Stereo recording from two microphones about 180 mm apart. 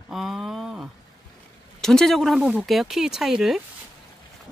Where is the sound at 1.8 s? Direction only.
Centre (ahead or behind).